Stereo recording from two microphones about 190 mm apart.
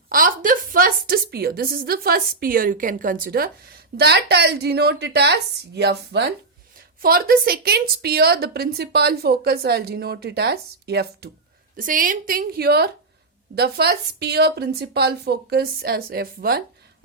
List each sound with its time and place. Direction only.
0.1 s a woman's voice: 45° right (ahead or behind); by 6.3 s 60° right (ahead or behind)
6.7 s a woman's voice: 50° right (ahead or behind)
11.8 s a woman's voice: 45° right (ahead or behind)